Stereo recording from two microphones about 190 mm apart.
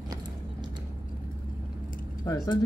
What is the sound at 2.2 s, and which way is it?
Vehicle, 15° left (ahead or behind).